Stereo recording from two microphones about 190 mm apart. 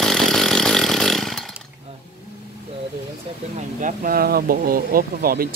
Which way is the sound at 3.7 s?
45° right (ahead or behind).